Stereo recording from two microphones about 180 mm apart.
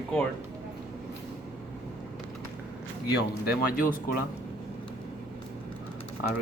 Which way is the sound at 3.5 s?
55° left (ahead or behind).